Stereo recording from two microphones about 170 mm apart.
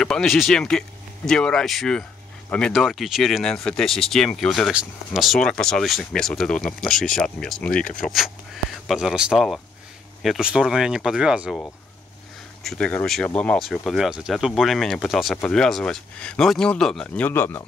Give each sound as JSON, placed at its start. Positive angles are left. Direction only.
{"t": 0.0, "sound": "speech", "side_deg": 0}
{"t": 12.6, "sound": "speech", "side_deg": 5}